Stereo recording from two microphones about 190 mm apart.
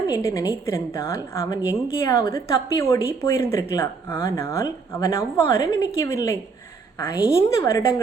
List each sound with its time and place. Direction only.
0.1 s speech: 15° left (ahead or behind)